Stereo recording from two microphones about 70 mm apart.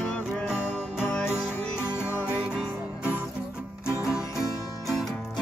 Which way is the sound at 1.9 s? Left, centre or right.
Left.